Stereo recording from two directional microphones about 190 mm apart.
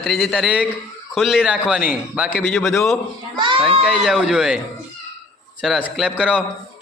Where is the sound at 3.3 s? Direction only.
25° right (ahead or behind).